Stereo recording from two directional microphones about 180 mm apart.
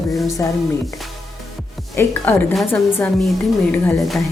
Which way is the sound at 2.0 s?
10° left (ahead or behind).